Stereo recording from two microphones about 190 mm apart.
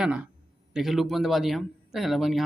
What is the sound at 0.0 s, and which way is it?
Speech, 5° right (ahead or behind).